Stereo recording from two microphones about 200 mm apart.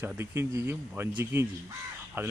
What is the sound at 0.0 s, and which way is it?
Speech, 10° right (ahead or behind).